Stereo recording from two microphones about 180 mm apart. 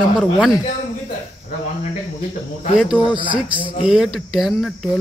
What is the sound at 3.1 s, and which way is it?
Speech, 25° right (ahead or behind).